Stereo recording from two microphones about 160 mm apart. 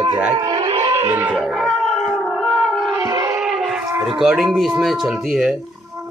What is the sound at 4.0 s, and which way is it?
Speech, 5° right (ahead or behind).